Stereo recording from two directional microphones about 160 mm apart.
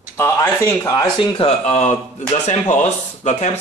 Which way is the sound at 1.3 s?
35° left (ahead or behind).